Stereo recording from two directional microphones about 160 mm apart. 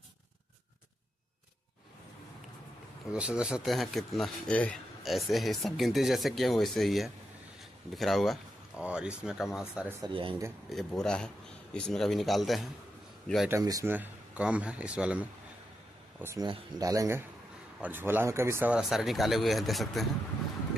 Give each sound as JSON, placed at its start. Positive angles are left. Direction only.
{"t": 3.1, "sound": "speech", "side_deg": -5}
{"t": 10.0, "sound": "speech", "side_deg": -35}
{"t": 10.7, "sound": "speech", "side_deg": 0}
{"t": 13.5, "sound": "speech", "side_deg": -20}
{"t": 13.9, "sound": "speech", "side_deg": -10}
{"t": 16.4, "sound": "speech", "side_deg": -25}
{"t": 17.7, "sound": "speech", "side_deg": -10}